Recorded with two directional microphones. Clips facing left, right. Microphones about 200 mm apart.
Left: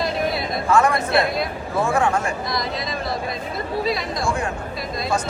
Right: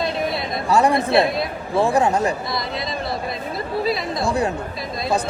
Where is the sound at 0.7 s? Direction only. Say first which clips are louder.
Right 2 dB; 35° right (ahead or behind).